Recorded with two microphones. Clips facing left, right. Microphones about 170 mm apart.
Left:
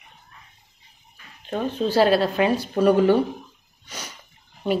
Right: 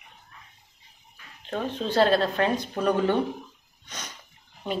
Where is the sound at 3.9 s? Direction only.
10° left (ahead or behind).